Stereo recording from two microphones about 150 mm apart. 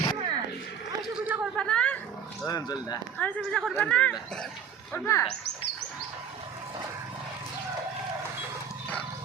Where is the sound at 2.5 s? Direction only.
25° left (ahead or behind).